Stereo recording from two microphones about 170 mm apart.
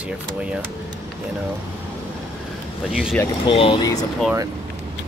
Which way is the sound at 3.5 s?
30° left (ahead or behind).